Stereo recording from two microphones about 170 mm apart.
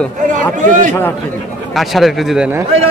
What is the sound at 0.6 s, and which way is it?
Speech, 45° right (ahead or behind).